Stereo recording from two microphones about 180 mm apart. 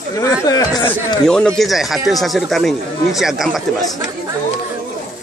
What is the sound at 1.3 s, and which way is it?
Speech, 5° left (ahead or behind).